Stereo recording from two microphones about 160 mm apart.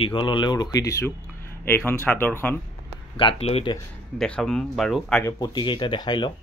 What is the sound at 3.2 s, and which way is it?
Speech, 35° left (ahead or behind).